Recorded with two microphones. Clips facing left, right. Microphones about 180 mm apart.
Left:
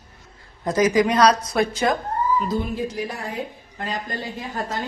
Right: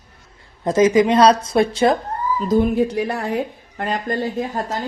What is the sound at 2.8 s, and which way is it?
Speech, 65° right (ahead or behind).